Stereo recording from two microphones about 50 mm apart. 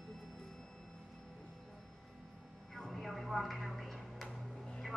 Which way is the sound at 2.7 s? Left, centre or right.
Centre.